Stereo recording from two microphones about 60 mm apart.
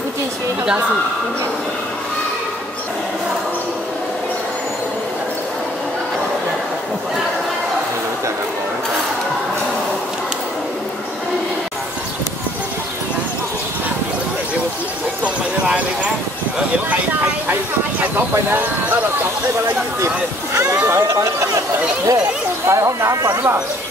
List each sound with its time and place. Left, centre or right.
18.3 s speech: right
20.5 s speech: right
22.7 s speech: right